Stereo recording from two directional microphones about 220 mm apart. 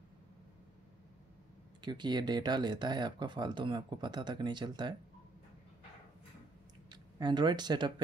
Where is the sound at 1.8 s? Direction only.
20° right (ahead or behind).